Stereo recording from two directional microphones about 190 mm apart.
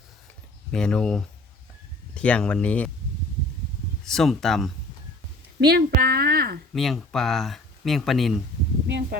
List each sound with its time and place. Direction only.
0.7 s speech: 5° left (ahead or behind)
4.0 s speech: centre (ahead or behind)
5.5 s speech: 60° right (ahead or behind)
6.7 s speech: centre (ahead or behind)
8.9 s speech: 65° right (ahead or behind)